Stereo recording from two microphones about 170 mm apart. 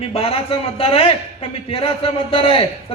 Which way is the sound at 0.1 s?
35° left (ahead or behind).